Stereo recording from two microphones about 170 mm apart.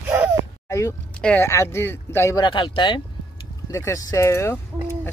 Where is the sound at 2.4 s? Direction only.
30° left (ahead or behind).